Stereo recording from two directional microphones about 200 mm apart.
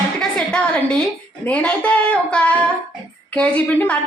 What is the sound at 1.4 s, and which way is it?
A woman's voice, 5° left (ahead or behind).